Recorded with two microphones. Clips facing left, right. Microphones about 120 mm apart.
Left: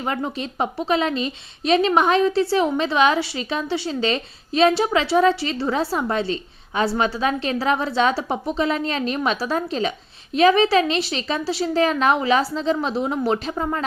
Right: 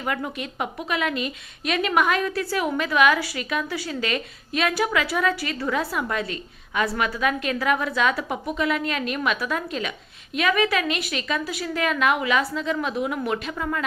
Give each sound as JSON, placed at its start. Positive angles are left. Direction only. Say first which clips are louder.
{"t": 0.0, "sound": "a woman's voice", "louder": "left 3 dB", "side_deg": 30}